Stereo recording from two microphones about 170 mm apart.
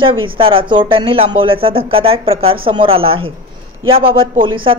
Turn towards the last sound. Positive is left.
turn(degrees=-30)  # may be behind; listen again after turning